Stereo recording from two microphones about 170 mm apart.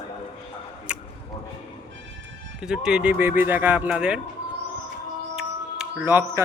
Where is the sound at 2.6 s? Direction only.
5° right (ahead or behind).